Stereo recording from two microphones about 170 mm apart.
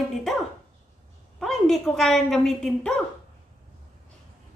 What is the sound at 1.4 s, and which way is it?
A woman's voice, centre (ahead or behind).